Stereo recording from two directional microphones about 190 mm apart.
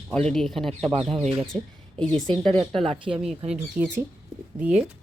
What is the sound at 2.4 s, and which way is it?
Speech, 25° right (ahead or behind).